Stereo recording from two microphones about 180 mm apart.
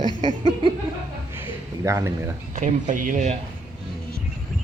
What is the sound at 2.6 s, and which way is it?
Speech, 45° right (ahead or behind).